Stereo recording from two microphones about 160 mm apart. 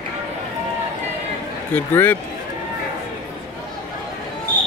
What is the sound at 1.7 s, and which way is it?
Speech, 10° left (ahead or behind).